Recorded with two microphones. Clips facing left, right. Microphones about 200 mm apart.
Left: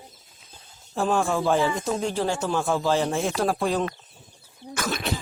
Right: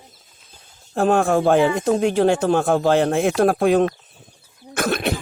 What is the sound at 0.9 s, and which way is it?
Speech, 60° right (ahead or behind).